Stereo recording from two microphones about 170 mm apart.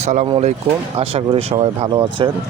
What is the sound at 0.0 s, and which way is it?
Speech, 45° right (ahead or behind).